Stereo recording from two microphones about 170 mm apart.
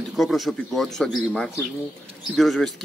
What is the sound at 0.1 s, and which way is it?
A man's voice, centre (ahead or behind).